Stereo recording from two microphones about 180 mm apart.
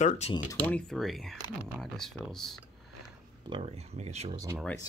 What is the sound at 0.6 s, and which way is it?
Speech, 5° left (ahead or behind).